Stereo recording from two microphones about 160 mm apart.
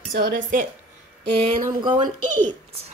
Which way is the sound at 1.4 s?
30° right (ahead or behind).